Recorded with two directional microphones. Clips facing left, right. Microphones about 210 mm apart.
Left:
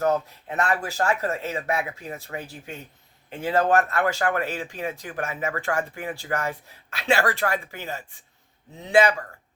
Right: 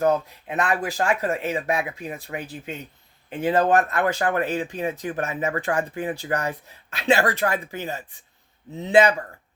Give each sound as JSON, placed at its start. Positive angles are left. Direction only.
{"t": 0.0, "sound": "speech", "side_deg": -15}